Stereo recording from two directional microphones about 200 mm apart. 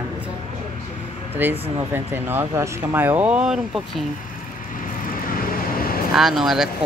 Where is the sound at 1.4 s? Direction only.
10° right (ahead or behind).